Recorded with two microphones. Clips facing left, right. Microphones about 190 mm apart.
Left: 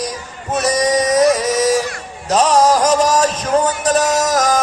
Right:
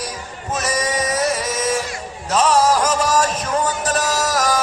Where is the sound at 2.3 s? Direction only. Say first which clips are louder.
Left 3 dB; 35° left (ahead or behind).